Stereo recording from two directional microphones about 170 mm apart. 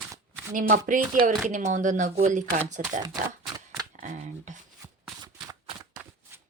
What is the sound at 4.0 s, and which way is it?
Speech, 50° right (ahead or behind).